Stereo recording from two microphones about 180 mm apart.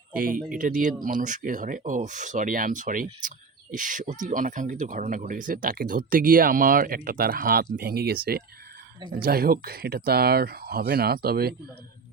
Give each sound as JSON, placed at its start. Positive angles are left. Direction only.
{"t": 0.1, "sound": "speech", "side_deg": -50}